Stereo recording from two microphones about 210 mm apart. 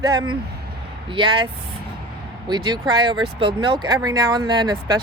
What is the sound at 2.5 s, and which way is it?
Speech, 20° right (ahead or behind).